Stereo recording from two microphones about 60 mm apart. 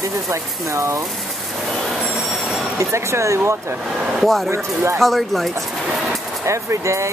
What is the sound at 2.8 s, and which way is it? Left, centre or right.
Speech, right.